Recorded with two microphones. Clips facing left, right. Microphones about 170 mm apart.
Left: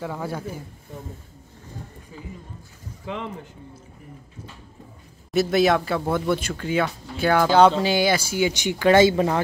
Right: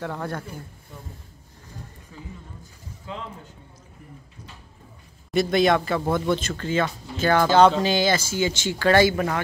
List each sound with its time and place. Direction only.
0.0 s speech: 5° left (ahead or behind)
5.3 s speech: 5° left (ahead or behind); by 9.4 s 25° left (ahead or behind)